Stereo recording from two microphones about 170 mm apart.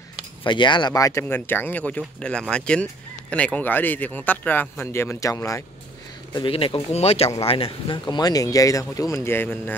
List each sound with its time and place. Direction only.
0.4 s speech: 30° left (ahead or behind)
6.3 s speech: 30° left (ahead or behind); by 9.8 s 10° left (ahead or behind)